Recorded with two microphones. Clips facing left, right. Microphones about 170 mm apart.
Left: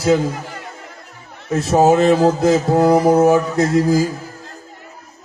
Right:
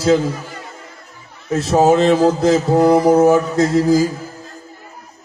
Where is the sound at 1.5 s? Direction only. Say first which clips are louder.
Even; 10° left (ahead or behind).